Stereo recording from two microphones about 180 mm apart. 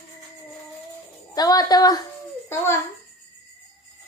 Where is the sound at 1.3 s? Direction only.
20° left (ahead or behind).